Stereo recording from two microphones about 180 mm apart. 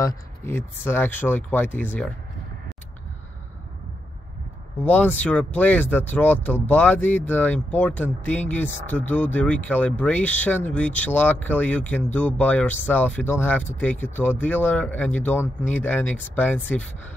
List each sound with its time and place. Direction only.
0.0 s speech: 15° left (ahead or behind)
4.8 s speech: 10° left (ahead or behind)